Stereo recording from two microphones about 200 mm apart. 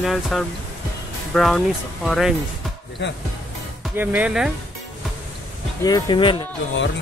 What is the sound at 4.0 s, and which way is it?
Speech, 10° right (ahead or behind).